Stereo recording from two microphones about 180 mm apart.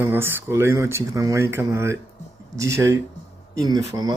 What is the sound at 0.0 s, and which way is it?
Speech, 10° right (ahead or behind).